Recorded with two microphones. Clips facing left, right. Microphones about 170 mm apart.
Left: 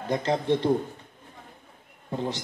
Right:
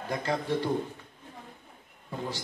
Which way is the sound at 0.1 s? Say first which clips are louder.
Left 5 dB; 25° left (ahead or behind).